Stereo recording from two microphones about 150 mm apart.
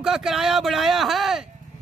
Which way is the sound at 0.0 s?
5° right (ahead or behind).